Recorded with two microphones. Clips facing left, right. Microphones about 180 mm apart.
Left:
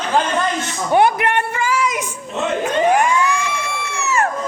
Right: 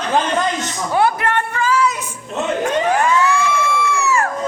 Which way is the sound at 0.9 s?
15° left (ahead or behind).